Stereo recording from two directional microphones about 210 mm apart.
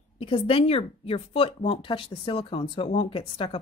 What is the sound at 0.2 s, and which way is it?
Speech, 25° left (ahead or behind).